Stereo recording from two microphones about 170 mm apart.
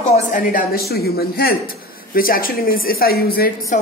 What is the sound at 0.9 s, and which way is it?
Speech, 65° left (ahead or behind).